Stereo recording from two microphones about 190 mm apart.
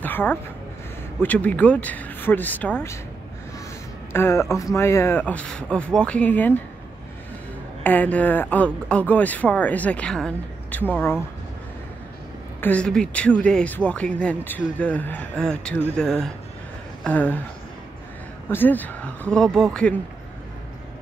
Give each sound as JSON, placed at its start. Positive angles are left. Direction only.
{"t": 0.0, "sound": "a sound", "side_deg": 10}
{"t": 1.2, "sound": "speech", "side_deg": 10}
{"t": 4.1, "sound": "speech", "side_deg": 15}
{"t": 7.8, "sound": "speech", "side_deg": 10}
{"t": 12.5, "sound": "speech", "side_deg": 10}
{"t": 18.5, "sound": "speech", "side_deg": 10}